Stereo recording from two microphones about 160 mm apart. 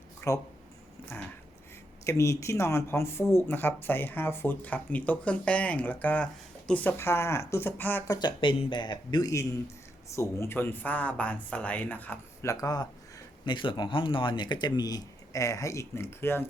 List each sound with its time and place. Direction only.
0.2 s speech: 15° left (ahead or behind)
2.0 s speech: 20° left (ahead or behind)
8.1 s speech: 30° left (ahead or behind)